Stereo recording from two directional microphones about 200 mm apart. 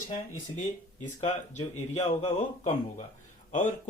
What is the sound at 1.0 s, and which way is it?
Speech, 35° left (ahead or behind).